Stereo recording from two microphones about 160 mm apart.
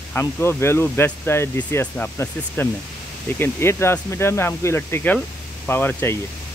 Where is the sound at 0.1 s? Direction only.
15° left (ahead or behind).